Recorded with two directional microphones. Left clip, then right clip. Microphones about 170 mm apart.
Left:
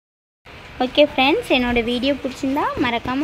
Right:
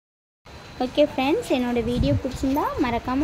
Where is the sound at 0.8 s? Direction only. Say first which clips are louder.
Left 5 dB; centre (ahead or behind).